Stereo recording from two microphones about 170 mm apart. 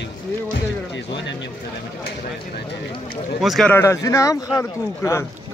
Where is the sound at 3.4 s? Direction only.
Centre (ahead or behind).